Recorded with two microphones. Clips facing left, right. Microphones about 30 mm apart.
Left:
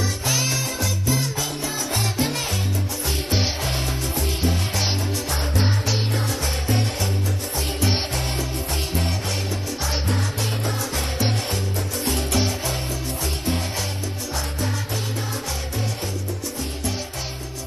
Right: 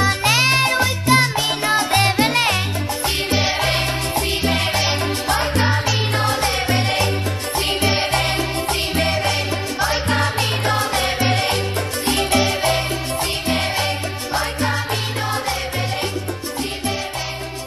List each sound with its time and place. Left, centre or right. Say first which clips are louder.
0.0 s music: right 8 dB; right
4.4 s music: right 5 dB; right
8.1 s music: right 7 dB; right